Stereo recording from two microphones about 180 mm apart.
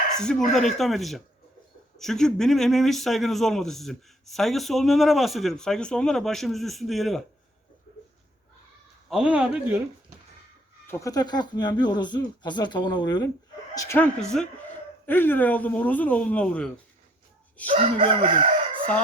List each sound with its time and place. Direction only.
0.2 s speech: 5° left (ahead or behind)
9.0 s speech: 5° right (ahead or behind)
10.8 s speech: 15° left (ahead or behind)
14.2 s speech: 5° left (ahead or behind)
17.7 s chicken: 30° right (ahead or behind)